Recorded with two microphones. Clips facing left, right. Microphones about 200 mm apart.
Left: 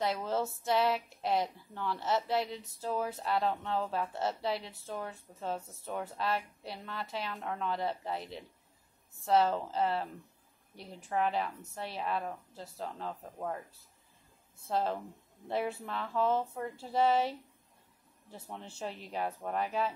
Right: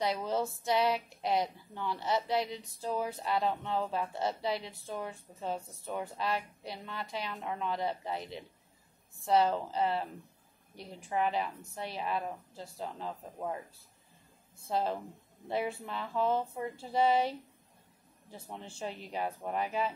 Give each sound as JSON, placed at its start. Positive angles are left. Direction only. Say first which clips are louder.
{"t": 0.0, "sound": "speech", "louder": "right 1 dB", "side_deg": 0}
{"t": 14.7, "sound": "speech", "louder": "even", "side_deg": 0}
{"t": 18.8, "sound": "speech", "louder": "even", "side_deg": 0}